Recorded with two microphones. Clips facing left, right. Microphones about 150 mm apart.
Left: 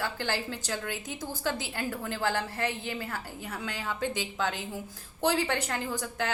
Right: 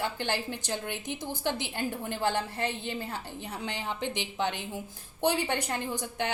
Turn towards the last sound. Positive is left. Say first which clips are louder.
# even
turn(degrees=-20)  # may be behind; listen again after turning